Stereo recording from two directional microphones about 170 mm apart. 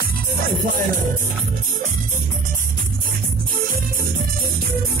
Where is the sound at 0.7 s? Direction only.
55° right (ahead or behind).